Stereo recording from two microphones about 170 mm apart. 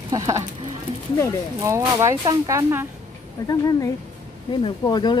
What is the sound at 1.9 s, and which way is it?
Speech, 20° right (ahead or behind).